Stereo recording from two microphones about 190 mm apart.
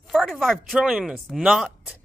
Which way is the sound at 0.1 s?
Centre (ahead or behind).